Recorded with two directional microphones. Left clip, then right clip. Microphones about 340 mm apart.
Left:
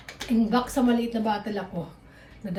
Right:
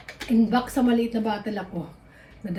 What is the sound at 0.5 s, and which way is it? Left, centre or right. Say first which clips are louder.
A woman's voice: left 1 dB; centre.